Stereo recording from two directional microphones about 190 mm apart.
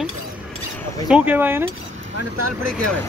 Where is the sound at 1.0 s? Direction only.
5° right (ahead or behind).